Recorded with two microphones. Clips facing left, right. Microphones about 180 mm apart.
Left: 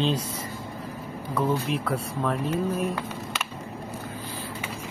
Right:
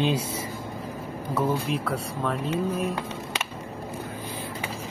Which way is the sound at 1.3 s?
5° right (ahead or behind).